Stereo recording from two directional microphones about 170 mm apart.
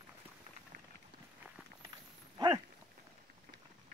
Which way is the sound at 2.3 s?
25° right (ahead or behind).